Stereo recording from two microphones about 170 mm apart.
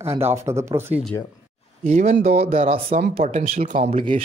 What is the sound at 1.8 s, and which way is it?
Speech, 40° right (ahead or behind).